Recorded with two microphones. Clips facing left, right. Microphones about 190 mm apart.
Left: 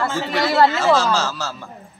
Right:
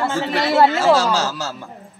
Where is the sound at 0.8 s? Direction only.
10° right (ahead or behind).